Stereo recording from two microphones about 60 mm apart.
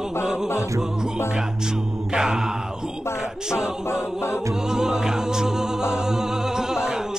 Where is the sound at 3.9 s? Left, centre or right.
Left.